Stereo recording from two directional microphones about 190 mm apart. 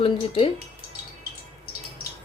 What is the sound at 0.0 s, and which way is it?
Speech, 30° left (ahead or behind).